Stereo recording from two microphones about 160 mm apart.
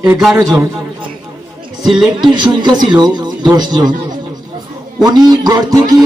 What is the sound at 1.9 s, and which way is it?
Speech, 5° right (ahead or behind).